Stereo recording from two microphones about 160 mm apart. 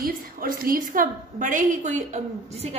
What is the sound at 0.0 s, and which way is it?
A woman's voice, 65° right (ahead or behind).